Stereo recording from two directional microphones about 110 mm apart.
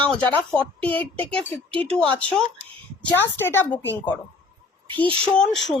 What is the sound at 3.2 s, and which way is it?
Speech, 20° left (ahead or behind).